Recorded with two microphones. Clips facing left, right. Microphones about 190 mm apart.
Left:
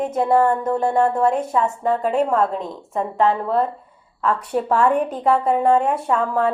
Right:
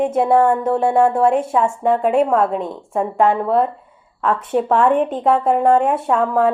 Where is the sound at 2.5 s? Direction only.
50° right (ahead or behind).